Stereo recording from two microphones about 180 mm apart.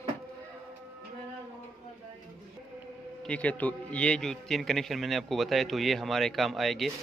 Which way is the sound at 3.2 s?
5° left (ahead or behind).